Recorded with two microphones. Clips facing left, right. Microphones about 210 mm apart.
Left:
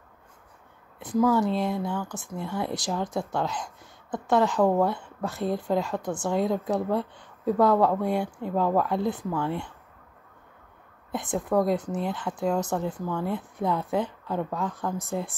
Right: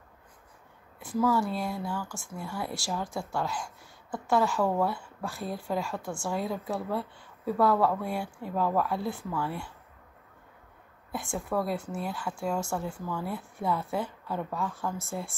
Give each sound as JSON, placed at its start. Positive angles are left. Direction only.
{"t": 0.9, "sound": "speech", "side_deg": 20}
{"t": 11.1, "sound": "a woman's voice", "side_deg": 20}